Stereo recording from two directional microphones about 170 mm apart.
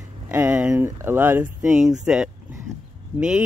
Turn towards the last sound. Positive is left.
turn(degrees=-5)  # may be behind; listen again after turning